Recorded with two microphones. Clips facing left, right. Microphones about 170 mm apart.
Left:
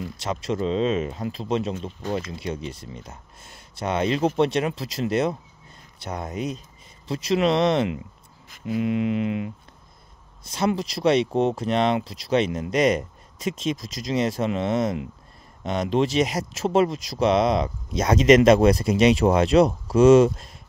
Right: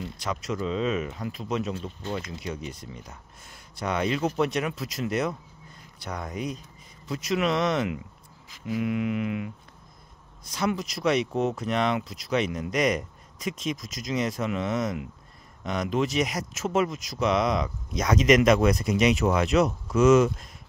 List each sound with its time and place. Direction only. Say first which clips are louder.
0.2 s speech: left 4 dB; 30° left (ahead or behind)